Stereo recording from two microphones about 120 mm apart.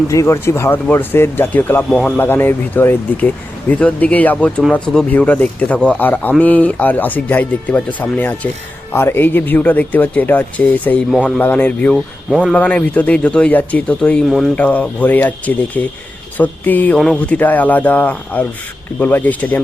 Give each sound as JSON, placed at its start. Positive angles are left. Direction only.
{"t": 0.1, "sound": "speech", "side_deg": 25}
{"t": 11.9, "sound": "speech", "side_deg": -5}
{"t": 12.5, "sound": "speech", "side_deg": 15}